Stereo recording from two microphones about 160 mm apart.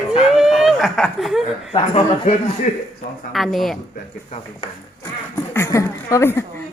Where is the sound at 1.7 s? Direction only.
35° left (ahead or behind).